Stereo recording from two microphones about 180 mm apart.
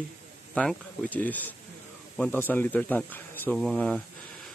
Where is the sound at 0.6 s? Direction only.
5° left (ahead or behind).